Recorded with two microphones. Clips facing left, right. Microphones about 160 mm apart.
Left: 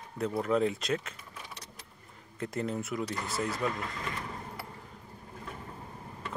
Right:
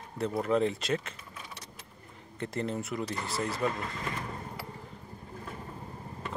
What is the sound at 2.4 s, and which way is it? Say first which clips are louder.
A man's voice: even; centre (ahead or behind).